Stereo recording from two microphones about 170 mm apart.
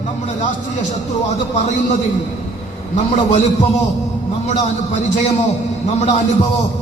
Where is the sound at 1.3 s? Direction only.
45° left (ahead or behind).